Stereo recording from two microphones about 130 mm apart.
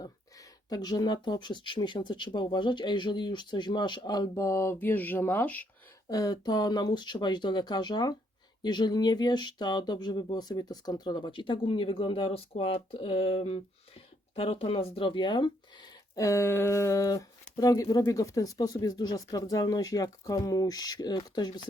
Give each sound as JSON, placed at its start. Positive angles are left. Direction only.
{"t": 0.0, "sound": "speech", "side_deg": 30}
{"t": 6.1, "sound": "speech", "side_deg": 30}